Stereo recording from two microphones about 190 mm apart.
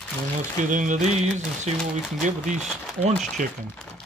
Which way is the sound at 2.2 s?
40° right (ahead or behind).